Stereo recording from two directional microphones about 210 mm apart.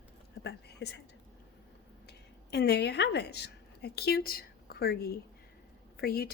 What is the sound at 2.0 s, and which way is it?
A woman's voice, 50° left (ahead or behind).